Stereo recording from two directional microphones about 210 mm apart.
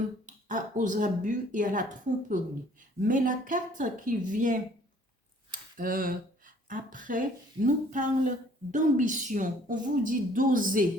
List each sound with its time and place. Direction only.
0.3 s a woman's voice: 35° right (ahead or behind)
3.0 s a woman's voice: 40° right (ahead or behind)
5.5 s a sound: 40° right (ahead or behind)
6.7 s a woman's voice: 40° right (ahead or behind)